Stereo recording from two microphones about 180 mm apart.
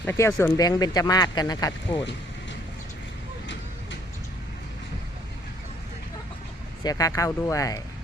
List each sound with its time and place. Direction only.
0.0 s speech: 15° left (ahead or behind)
6.8 s speech: 20° left (ahead or behind)